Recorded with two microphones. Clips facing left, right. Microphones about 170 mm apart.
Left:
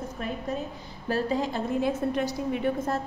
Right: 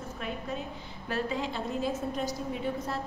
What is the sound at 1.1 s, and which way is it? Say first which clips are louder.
Speech: left 5 dB; 40° left (ahead or behind).